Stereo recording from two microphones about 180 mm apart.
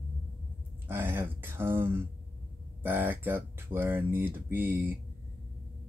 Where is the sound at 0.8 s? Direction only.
10° right (ahead or behind).